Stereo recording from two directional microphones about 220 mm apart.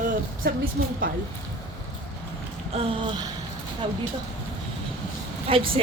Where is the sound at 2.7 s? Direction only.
20° right (ahead or behind).